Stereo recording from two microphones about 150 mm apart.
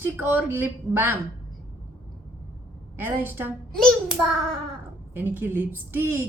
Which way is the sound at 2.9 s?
15° right (ahead or behind).